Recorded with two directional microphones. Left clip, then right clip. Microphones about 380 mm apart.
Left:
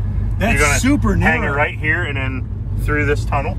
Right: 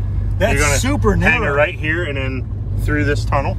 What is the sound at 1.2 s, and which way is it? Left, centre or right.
Speech, centre.